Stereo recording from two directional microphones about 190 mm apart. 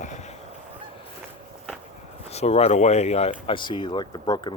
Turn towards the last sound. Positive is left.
turn(degrees=20)  # may be behind; listen again after turning